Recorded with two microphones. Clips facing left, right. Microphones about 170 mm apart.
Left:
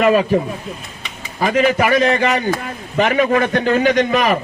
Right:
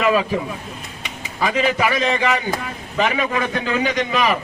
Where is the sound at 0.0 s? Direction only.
45° left (ahead or behind).